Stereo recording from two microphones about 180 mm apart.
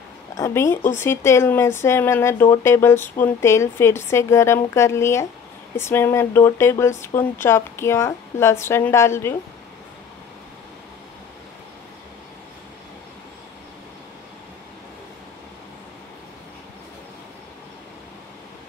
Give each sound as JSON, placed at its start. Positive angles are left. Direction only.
{"t": 0.3, "sound": "a woman's voice", "side_deg": 15}